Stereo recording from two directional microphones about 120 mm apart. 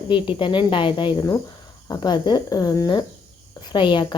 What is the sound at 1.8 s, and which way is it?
A woman's voice, 35° left (ahead or behind).